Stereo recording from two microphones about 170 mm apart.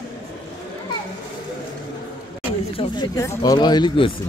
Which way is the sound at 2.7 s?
25° left (ahead or behind).